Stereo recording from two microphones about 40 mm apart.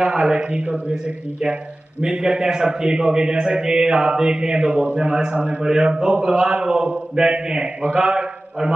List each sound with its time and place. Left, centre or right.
0.0 s a man's voice: right
4.7 s a man's voice: right
5.6 s a man's voice: centre
8.1 s a sound: right